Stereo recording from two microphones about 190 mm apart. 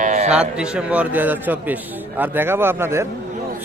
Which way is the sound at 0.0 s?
40° right (ahead or behind).